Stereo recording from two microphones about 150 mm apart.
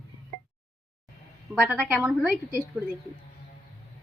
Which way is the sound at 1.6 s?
10° right (ahead or behind).